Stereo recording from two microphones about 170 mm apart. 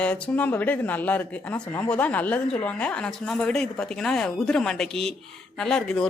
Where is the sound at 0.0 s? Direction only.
10° left (ahead or behind).